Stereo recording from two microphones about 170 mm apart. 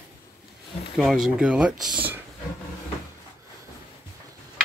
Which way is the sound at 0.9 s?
Centre (ahead or behind).